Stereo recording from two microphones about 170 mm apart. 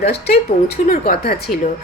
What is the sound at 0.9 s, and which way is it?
Speech, 60° left (ahead or behind).